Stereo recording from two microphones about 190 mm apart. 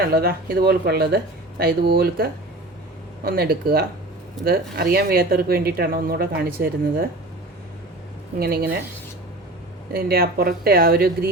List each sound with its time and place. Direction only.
0.0 s speech: 50° right (ahead or behind)
8.4 s speech: 50° right (ahead or behind)
9.9 s speech: 50° right (ahead or behind)